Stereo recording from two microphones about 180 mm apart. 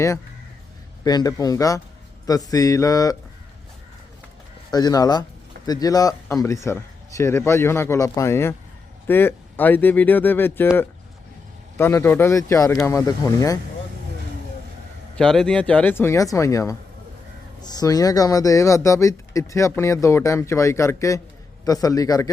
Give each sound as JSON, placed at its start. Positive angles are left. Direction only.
{"t": 1.0, "sound": "speech", "side_deg": 20}
{"t": 4.7, "sound": "speech", "side_deg": 20}
{"t": 11.8, "sound": "speech", "side_deg": 15}
{"t": 15.1, "sound": "speech", "side_deg": 5}